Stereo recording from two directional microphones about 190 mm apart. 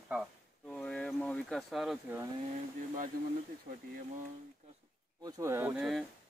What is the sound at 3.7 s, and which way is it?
Speech, 40° right (ahead or behind).